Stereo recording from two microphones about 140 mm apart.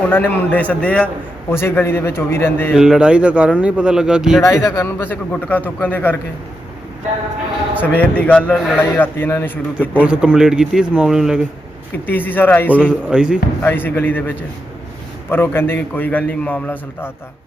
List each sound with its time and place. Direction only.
0.1 s a man's voice: 15° left (ahead or behind)
2.7 s a man's voice: 5° right (ahead or behind)
4.4 s a man's voice: 25° left (ahead or behind)
4.9 s a man's voice: 10° left (ahead or behind)
7.8 s a man's voice: 10° left (ahead or behind)
10.0 s speech: 10° right (ahead or behind)
12.0 s a man's voice: 15° left (ahead or behind)
12.7 s a man's voice: 5° right (ahead or behind)
13.6 s a man's voice: 15° left (ahead or behind)